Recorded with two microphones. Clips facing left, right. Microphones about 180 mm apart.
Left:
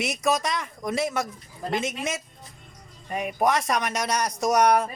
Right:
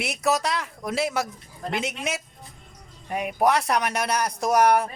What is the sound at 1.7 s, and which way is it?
Speech, 70° right (ahead or behind).